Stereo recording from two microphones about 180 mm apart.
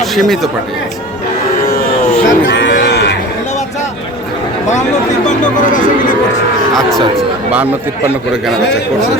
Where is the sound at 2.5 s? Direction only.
90° left.